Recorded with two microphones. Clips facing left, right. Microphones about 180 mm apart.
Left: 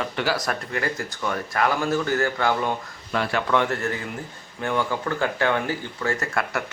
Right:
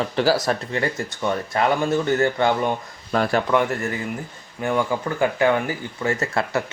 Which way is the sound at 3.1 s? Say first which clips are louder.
Right 4 dB; 40° right (ahead or behind).